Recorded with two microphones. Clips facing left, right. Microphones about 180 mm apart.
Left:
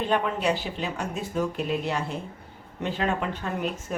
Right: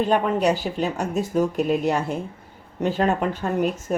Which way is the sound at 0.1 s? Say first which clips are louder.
Right 5 dB; 45° right (ahead or behind).